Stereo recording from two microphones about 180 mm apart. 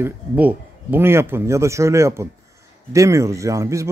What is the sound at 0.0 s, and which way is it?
Speech, 10° right (ahead or behind).